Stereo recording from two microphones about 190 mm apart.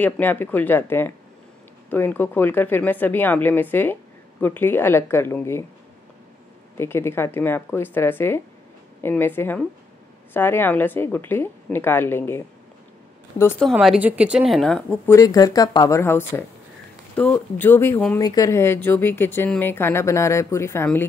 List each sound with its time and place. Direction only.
0.0 s speech: 10° left (ahead or behind)
6.8 s speech: 15° left (ahead or behind)
13.6 s a woman's voice: centre (ahead or behind)
15.0 s speech: 20° left (ahead or behind)